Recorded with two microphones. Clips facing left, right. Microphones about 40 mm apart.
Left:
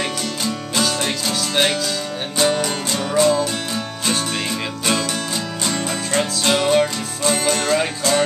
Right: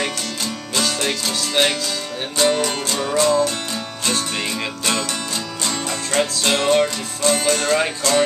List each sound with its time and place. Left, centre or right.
0.7 s music: centre
5.7 s music: centre